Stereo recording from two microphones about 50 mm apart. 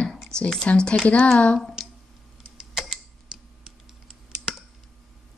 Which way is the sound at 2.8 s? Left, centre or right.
Centre.